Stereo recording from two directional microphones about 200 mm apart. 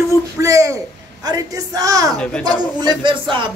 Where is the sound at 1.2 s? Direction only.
20° right (ahead or behind).